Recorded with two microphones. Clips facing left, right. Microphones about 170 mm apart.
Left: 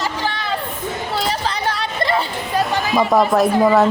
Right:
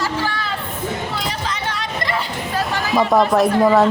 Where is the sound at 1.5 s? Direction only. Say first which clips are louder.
Left 3 dB; 30° left (ahead or behind).